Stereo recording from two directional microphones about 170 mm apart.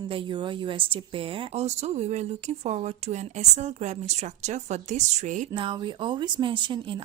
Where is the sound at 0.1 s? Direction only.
30° right (ahead or behind); by 5.5 s 45° right (ahead or behind).